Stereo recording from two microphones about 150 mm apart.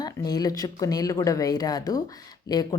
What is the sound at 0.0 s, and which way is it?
A woman's voice, 25° left (ahead or behind).